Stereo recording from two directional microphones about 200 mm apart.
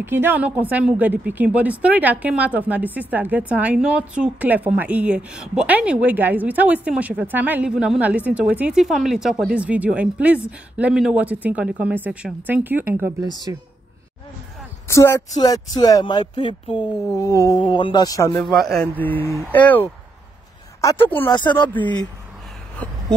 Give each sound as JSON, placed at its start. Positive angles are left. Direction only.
{"t": 0.0, "sound": "a woman's voice", "side_deg": -10}
{"t": 14.9, "sound": "speech", "side_deg": 15}
{"t": 18.5, "sound": "speech", "side_deg": 0}
{"t": 20.8, "sound": "speech", "side_deg": 15}